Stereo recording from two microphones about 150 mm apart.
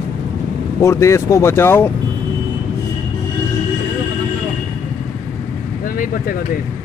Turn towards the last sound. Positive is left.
turn(degrees=70)  # may be behind; listen again after turning